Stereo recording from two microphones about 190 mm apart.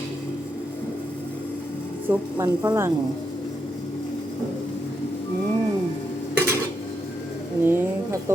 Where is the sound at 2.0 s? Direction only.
10° right (ahead or behind).